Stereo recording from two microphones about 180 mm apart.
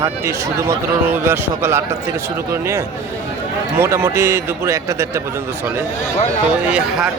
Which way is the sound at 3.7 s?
15° right (ahead or behind).